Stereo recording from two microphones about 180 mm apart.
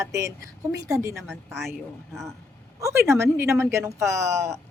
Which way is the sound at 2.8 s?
15° right (ahead or behind).